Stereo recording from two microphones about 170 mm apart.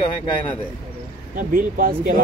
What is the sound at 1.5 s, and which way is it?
Speech, 55° right (ahead or behind).